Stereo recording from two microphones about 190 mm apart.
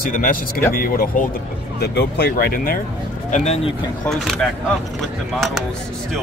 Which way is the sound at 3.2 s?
40° left (ahead or behind).